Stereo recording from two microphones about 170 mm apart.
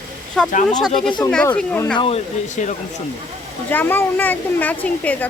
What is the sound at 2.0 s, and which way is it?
Speech, 35° left (ahead or behind).